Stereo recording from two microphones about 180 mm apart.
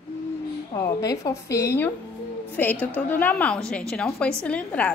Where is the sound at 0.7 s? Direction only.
20° left (ahead or behind).